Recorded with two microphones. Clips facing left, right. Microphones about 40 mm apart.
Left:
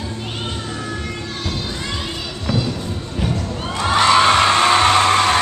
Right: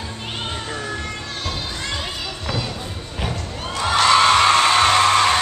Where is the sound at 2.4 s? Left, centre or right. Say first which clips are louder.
Left 6 dB; centre.